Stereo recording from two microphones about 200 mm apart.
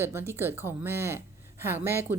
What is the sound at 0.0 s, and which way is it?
A woman's voice, 10° right (ahead or behind).